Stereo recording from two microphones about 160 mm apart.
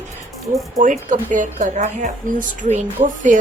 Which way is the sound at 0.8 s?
55° right (ahead or behind).